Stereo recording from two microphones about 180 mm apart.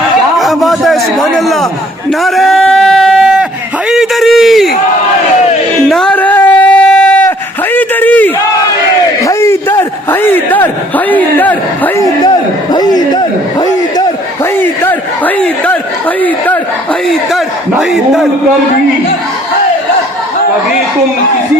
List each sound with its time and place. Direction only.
0.3 s a sound: centre (ahead or behind)
5.9 s a sound: 5° left (ahead or behind)
9.2 s a man's voice: 15° left (ahead or behind)
12.7 s chatter: 20° left (ahead or behind)
14.6 s speech: 10° left (ahead or behind)
17.1 s a man's voice: centre (ahead or behind)